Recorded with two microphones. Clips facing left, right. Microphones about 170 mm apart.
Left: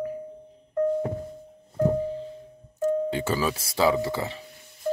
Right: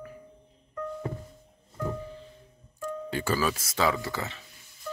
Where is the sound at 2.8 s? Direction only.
25° left (ahead or behind).